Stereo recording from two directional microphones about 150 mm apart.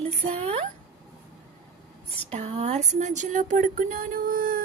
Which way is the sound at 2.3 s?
45° right (ahead or behind).